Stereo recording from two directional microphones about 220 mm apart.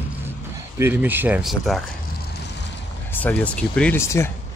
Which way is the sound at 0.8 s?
10° right (ahead or behind).